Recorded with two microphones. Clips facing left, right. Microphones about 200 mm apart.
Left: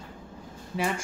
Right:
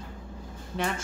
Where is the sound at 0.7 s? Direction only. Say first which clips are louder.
Left 2 dB; 10° left (ahead or behind).